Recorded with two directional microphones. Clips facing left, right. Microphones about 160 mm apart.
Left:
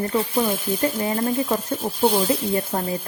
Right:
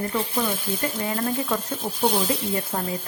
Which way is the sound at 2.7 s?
35° left (ahead or behind).